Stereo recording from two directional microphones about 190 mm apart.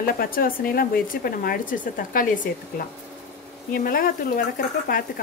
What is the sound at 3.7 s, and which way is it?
Speech, 50° left (ahead or behind).